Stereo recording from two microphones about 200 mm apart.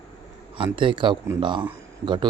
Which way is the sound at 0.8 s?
25° right (ahead or behind).